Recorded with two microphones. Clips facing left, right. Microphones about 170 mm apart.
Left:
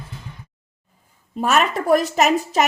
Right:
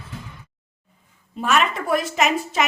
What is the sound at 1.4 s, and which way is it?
A woman's voice, 40° left (ahead or behind).